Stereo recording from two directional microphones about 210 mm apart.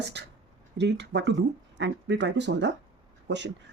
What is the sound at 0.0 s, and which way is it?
Speech, 55° right (ahead or behind).